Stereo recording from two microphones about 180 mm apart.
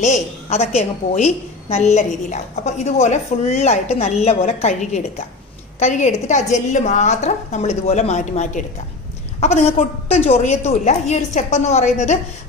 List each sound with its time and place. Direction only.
0.0 s a woman's voice: 40° left (ahead or behind)